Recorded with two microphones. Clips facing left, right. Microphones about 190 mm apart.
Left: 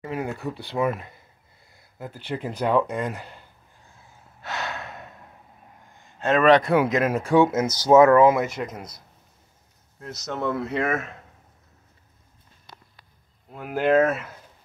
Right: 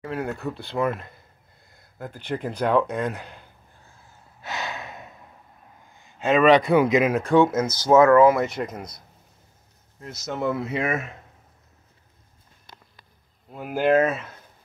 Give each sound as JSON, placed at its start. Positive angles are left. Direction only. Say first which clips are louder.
{"t": 0.0, "sound": "speech", "louder": "even", "side_deg": 10}
{"t": 1.6, "sound": "a sound", "louder": "right 1 dB", "side_deg": 5}
{"t": 2.4, "sound": "speech", "louder": "right 1 dB", "side_deg": 5}
{"t": 4.4, "sound": "gasp", "louder": "even", "side_deg": 0}
{"t": 6.0, "sound": "speech", "louder": "right 1 dB", "side_deg": 0}
{"t": 8.4, "sound": "speech", "louder": "right 1 dB", "side_deg": 0}
{"t": 13.5, "sound": "speech", "louder": "right 1 dB", "side_deg": 0}